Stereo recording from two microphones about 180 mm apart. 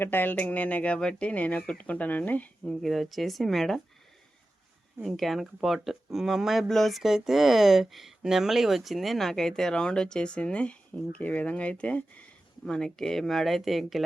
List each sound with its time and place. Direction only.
0.0 s speech: 10° left (ahead or behind)
5.0 s speech: centre (ahead or behind)